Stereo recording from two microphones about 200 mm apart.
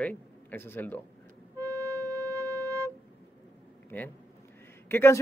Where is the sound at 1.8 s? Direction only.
15° right (ahead or behind).